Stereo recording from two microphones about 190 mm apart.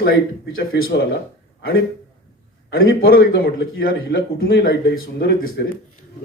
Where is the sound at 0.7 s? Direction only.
65° left (ahead or behind).